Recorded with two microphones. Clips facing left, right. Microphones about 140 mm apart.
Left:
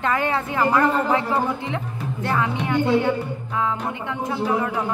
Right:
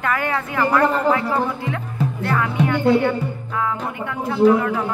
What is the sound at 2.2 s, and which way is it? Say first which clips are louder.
A woman's voice: right 2 dB; 20° left (ahead or behind).